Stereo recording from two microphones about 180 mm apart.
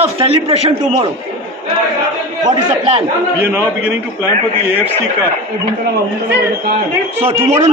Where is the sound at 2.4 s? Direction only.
35° right (ahead or behind).